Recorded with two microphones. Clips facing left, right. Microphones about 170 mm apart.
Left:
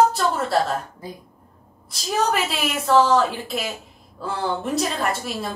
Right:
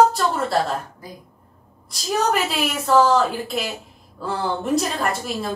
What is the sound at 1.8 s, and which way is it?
A woman's voice, centre (ahead or behind).